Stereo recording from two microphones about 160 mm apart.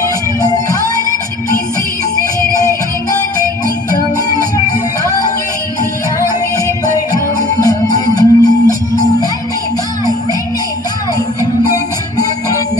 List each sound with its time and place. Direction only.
7.1 s music: 25° left (ahead or behind)
11.6 s music: 20° left (ahead or behind)